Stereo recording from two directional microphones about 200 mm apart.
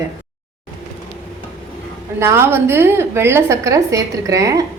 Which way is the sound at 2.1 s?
15° right (ahead or behind).